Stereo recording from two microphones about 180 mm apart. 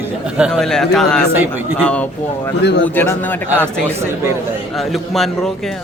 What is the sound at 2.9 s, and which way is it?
Speech, 10° left (ahead or behind).